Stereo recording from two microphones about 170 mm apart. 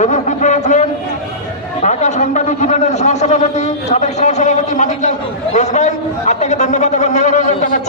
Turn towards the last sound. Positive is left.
turn(degrees=45)  # may be behind; listen again after turning